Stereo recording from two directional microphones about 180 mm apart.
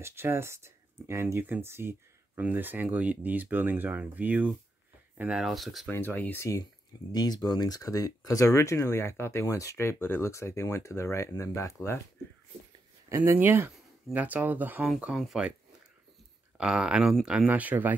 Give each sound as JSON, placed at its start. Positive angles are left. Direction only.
{"t": 0.0, "sound": "speech", "side_deg": -15}
{"t": 5.9, "sound": "speech", "side_deg": 10}
{"t": 13.1, "sound": "speech", "side_deg": -15}
{"t": 16.5, "sound": "speech", "side_deg": -5}